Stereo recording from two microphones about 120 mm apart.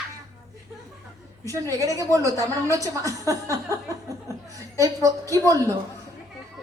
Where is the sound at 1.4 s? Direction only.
30° right (ahead or behind).